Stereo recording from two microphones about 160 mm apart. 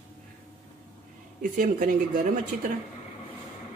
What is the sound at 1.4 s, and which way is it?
Speech, 55° right (ahead or behind).